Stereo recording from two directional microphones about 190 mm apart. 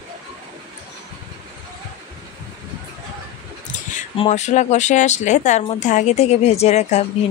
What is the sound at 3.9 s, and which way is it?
Speech, 35° left (ahead or behind).